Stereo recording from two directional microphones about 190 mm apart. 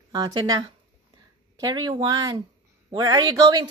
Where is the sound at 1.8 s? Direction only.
20° right (ahead or behind).